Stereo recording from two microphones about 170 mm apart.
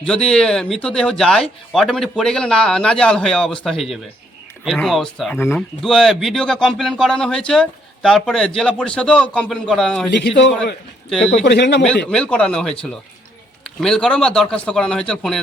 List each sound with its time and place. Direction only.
0.0 s speech: 5° left (ahead or behind)
11.3 s speech: 80° left
12.1 s speech: 5° left (ahead or behind)